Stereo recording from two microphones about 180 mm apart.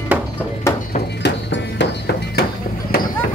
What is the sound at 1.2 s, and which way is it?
Music, 75° left (ahead or behind).